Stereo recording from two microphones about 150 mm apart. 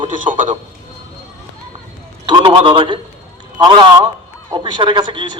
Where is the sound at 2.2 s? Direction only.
30° right (ahead or behind).